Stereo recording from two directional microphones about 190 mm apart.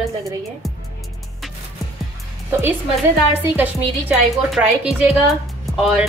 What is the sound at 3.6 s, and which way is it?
A woman's voice, 5° right (ahead or behind).